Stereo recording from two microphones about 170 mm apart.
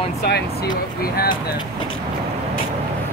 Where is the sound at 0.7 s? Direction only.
60° left (ahead or behind).